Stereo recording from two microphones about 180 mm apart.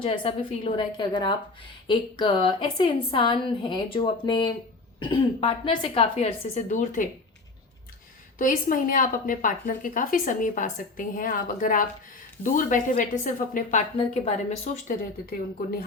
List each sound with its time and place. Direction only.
0.0 s a woman's voice: 30° left (ahead or behind); by 7.1 s 45° left (ahead or behind)
8.4 s a woman's voice: 50° left (ahead or behind)
13.9 s a woman's voice: 35° left (ahead or behind)